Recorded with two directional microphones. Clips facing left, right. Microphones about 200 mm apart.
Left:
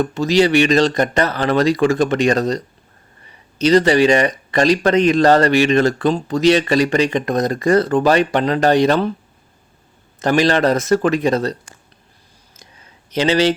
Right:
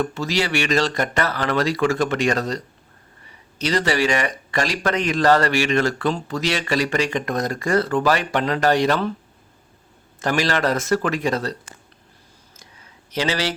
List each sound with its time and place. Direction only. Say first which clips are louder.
0.0 s speech: left 8 dB; 20° left (ahead or behind)
3.6 s speech: left 8 dB; 20° left (ahead or behind)
10.2 s speech: left 6 dB; 20° left (ahead or behind)
13.1 s speech: left 8 dB; 20° left (ahead or behind)